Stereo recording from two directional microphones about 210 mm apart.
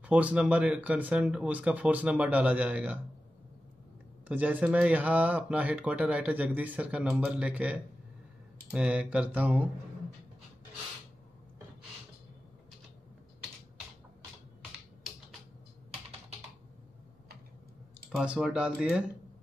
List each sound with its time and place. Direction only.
0.0 s speech: 5° right (ahead or behind)
4.3 s speech: 5° right (ahead or behind)
15.9 s computer keyboard: 30° right (ahead or behind)
18.1 s speech: 5° right (ahead or behind)